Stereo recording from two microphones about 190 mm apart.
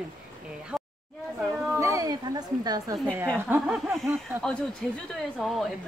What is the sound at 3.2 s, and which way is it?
Speech, 10° right (ahead or behind).